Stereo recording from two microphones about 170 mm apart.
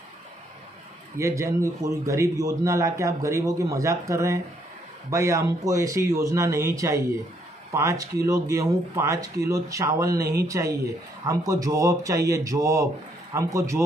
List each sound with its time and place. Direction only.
1.1 s a man's voice: 15° right (ahead or behind)